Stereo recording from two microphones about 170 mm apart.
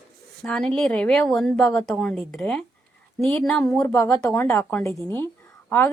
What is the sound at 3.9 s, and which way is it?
A woman's voice, 20° left (ahead or behind).